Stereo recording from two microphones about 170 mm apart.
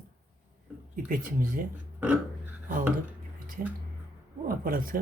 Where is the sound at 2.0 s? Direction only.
10° right (ahead or behind).